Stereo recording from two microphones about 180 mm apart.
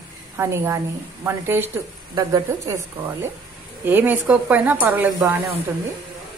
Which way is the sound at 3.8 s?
10° right (ahead or behind).